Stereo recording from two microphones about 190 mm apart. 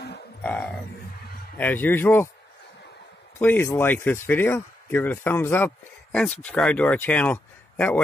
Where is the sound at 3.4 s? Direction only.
10° left (ahead or behind).